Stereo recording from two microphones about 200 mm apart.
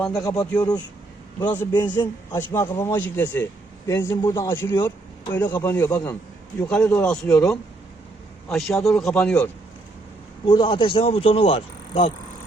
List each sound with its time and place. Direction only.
0.0 s a man's voice: centre (ahead or behind)
0.3 s a man's voice: 15° left (ahead or behind)
1.9 s a man's voice: 15° left (ahead or behind)
10.4 s speech: 20° left (ahead or behind)